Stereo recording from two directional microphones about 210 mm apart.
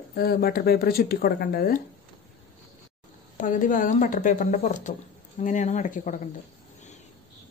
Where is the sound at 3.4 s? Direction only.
40° left (ahead or behind).